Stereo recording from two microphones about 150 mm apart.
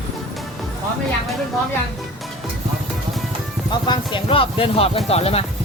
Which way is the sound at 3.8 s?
35° left (ahead or behind).